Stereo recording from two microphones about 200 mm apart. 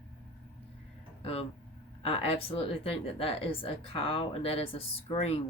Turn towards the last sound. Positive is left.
turn(degrees=30)  # may be behind; listen again after turning